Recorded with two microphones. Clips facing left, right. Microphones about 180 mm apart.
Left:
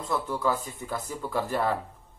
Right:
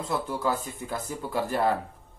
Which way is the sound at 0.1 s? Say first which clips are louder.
Left 1 dB; 5° right (ahead or behind).